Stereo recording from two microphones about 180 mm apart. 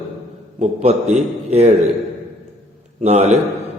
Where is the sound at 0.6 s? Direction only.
35° right (ahead or behind).